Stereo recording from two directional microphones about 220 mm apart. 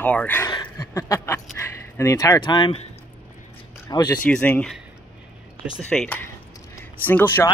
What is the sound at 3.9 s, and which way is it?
Speech, 15° left (ahead or behind).